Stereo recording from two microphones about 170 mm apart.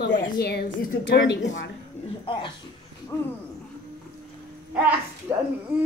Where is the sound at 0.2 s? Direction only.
70° left (ahead or behind); by 1.7 s 90° left.